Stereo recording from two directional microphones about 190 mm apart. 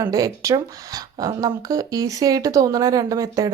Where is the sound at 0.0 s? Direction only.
15° right (ahead or behind).